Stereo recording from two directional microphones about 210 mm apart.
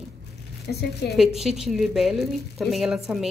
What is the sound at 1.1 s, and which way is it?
A woman's voice, centre (ahead or behind).